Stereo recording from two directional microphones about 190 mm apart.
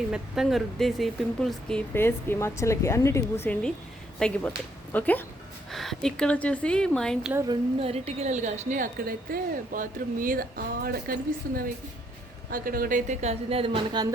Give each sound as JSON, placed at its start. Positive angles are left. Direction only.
{"t": 0.1, "sound": "speech", "side_deg": 0}
{"t": 7.4, "sound": "a woman's voice", "side_deg": -30}